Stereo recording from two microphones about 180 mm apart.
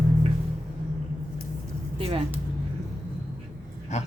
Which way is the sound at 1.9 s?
30° right (ahead or behind).